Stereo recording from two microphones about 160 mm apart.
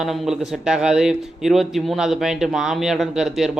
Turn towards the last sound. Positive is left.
turn(degrees=0)  # may be behind; listen again after turning